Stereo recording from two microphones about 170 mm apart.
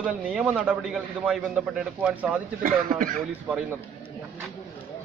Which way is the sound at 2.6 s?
55° right (ahead or behind).